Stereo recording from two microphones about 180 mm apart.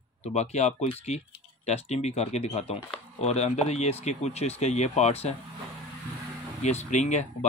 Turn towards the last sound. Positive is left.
turn(degrees=40)  # may be behind; listen again after turning